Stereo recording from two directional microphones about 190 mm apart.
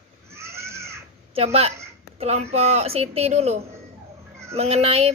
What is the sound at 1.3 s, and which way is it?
A woman's voice, 30° right (ahead or behind).